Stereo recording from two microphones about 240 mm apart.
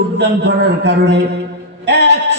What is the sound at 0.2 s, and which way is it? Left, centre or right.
A man's voice, right.